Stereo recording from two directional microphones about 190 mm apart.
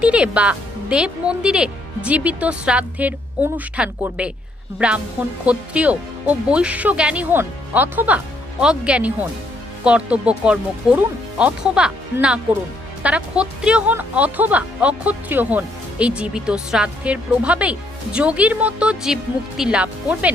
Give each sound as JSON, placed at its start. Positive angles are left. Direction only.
{"t": 0.0, "sound": "speech", "side_deg": -5}